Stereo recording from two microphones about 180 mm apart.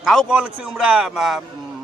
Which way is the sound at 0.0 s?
Centre (ahead or behind).